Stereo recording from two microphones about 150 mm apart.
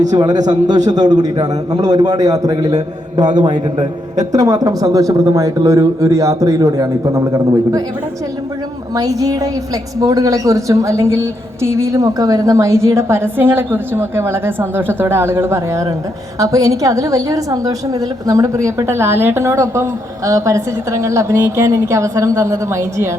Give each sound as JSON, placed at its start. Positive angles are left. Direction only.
{"t": 0.1, "sound": "a woman's voice", "side_deg": -25}
{"t": 9.0, "sound": "a woman's voice", "side_deg": -25}